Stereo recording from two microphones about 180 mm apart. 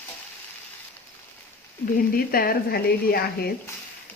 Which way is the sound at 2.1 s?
55° left (ahead or behind).